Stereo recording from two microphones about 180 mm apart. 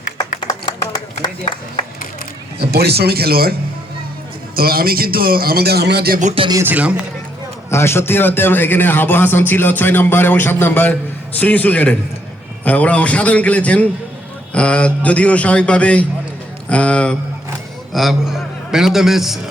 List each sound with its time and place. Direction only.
0.4 s a sound: 20° left (ahead or behind)
2.6 s a man's voice: 60° right (ahead or behind)
4.5 s a man's voice: 55° right (ahead or behind)
6.1 s speech: 40° right (ahead or behind)
6.4 s speech: 20° right (ahead or behind)
6.7 s a man's voice: 10° right (ahead or behind)
7.7 s a man's voice: 15° left (ahead or behind); by 19.4 s centre (ahead or behind)